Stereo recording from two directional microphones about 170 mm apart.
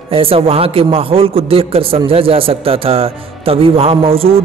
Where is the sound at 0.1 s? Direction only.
35° right (ahead or behind).